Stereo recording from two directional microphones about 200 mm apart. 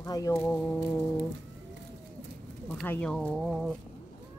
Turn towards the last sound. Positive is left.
turn(degrees=0)  # may be behind; listen again after turning